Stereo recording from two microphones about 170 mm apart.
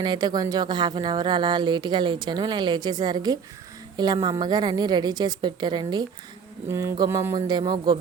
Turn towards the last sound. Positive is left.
turn(degrees=-25)  # may be behind; listen again after turning